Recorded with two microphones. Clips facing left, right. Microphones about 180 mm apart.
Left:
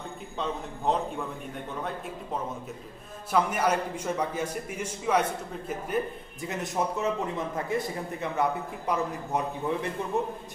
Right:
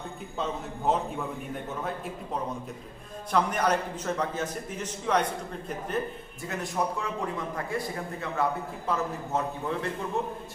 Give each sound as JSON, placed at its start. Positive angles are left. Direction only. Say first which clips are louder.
{"t": 0.9, "sound": "a man's voice", "louder": "even", "side_deg": -5}
{"t": 3.3, "sound": "a man's voice", "louder": "even", "side_deg": 5}
{"t": 6.4, "sound": "a man's voice", "louder": "left 1 dB", "side_deg": 20}